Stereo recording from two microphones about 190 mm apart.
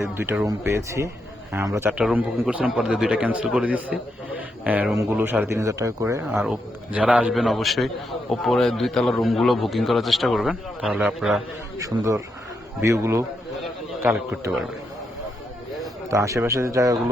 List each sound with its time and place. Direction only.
0.0 s a man's voice: 15° right (ahead or behind)
6.3 s a man's voice: 5° right (ahead or behind)
11.8 s speech: 15° right (ahead or behind)
16.0 s speech: 15° right (ahead or behind)